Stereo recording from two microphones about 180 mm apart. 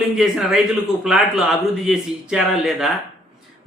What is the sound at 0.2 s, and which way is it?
A man's voice, 5° right (ahead or behind).